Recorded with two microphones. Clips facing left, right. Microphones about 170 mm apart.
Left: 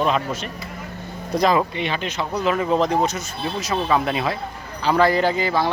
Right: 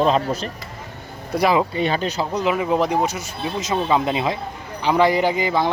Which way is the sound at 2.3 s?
15° right (ahead or behind).